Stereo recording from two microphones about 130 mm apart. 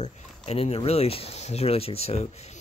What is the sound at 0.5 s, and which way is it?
Speech, 50° left (ahead or behind).